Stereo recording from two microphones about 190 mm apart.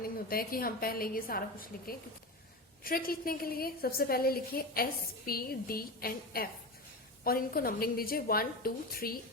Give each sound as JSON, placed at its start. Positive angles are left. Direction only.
{"t": 0.0, "sound": "a woman's voice", "side_deg": 50}